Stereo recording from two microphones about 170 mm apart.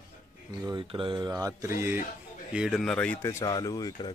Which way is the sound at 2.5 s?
5° right (ahead or behind).